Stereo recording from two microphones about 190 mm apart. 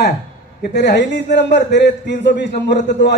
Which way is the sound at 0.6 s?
65° left (ahead or behind).